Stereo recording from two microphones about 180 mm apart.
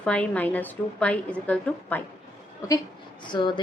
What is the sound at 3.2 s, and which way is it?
Speech, 25° left (ahead or behind).